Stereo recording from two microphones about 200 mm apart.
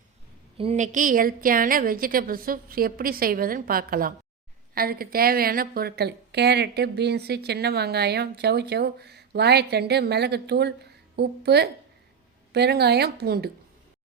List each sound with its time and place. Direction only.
0.5 s a woman's voice: 30° right (ahead or behind); by 13.5 s 50° right (ahead or behind)